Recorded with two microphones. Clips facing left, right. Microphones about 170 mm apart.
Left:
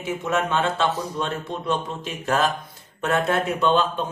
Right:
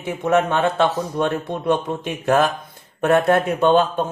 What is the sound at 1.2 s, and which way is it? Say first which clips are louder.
Speech: right 9 dB; 55° right (ahead or behind).